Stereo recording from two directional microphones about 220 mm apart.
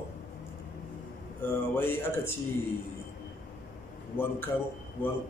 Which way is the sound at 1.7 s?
10° left (ahead or behind).